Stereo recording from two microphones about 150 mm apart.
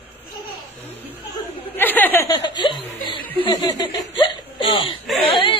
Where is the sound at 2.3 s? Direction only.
30° left (ahead or behind).